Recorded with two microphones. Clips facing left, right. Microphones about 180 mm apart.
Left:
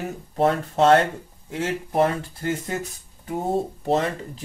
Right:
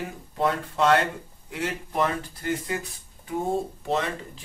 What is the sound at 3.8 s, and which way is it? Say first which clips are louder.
Speech: left 5 dB; 40° left (ahead or behind).